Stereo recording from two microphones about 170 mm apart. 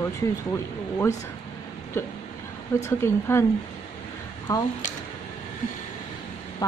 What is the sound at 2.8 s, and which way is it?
Speech, 15° left (ahead or behind).